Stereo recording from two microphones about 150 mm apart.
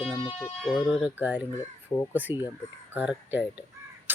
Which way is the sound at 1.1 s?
10° right (ahead or behind).